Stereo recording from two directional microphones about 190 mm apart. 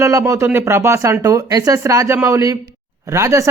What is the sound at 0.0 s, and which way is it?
Speech, 15° right (ahead or behind).